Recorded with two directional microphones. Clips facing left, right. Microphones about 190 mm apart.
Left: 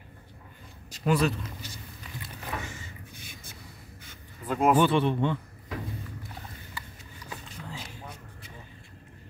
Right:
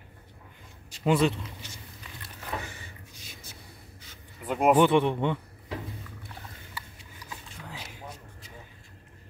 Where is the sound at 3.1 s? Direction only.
55° left (ahead or behind).